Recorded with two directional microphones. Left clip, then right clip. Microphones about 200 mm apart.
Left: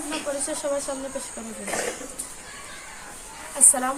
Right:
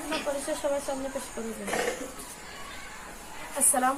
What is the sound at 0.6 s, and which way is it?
Speech, 25° left (ahead or behind).